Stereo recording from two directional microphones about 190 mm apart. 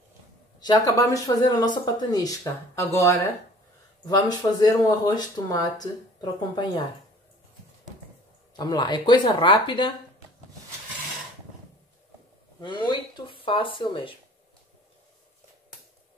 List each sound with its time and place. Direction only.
0.6 s speech: 20° left (ahead or behind)
8.5 s speech: 20° left (ahead or behind)
12.5 s speech: 25° left (ahead or behind)